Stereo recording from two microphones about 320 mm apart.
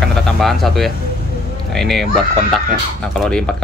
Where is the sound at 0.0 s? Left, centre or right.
Centre.